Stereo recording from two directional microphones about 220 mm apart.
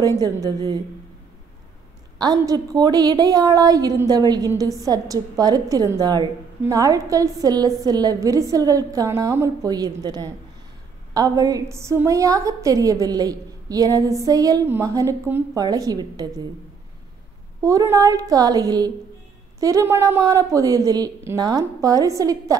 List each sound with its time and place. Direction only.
0.0 s a woman's voice: 15° right (ahead or behind)
2.1 s a woman's voice: 15° right (ahead or behind)
17.6 s a woman's voice: 15° right (ahead or behind)